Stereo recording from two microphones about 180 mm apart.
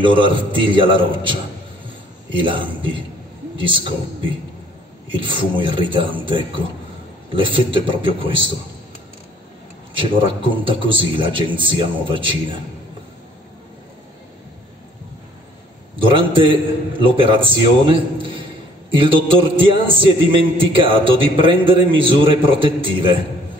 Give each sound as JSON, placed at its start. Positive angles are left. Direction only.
{"t": 0.0, "sound": "a man's voice", "side_deg": -30}
{"t": 5.1, "sound": "a man's voice", "side_deg": -25}
{"t": 9.9, "sound": "a man's voice", "side_deg": -30}
{"t": 16.0, "sound": "a man's voice", "side_deg": -30}